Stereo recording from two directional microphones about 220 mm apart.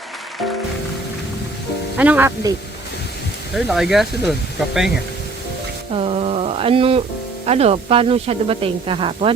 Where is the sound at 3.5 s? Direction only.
Centre (ahead or behind).